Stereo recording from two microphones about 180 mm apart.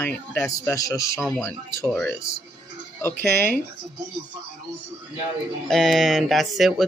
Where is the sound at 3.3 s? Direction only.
60° right (ahead or behind).